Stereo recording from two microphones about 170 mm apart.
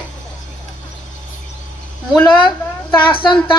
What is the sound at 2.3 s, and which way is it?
Speech, 25° left (ahead or behind).